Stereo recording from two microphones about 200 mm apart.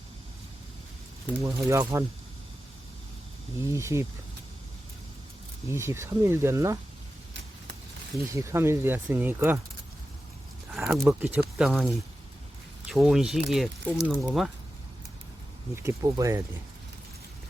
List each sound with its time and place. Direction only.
1.4 s speech: 15° right (ahead or behind)
3.6 s speech: 15° right (ahead or behind)
5.7 s speech: 15° right (ahead or behind)
8.3 s speech: 15° right (ahead or behind)
10.7 s speech: 5° right (ahead or behind)
15.7 s speech: 15° right (ahead or behind)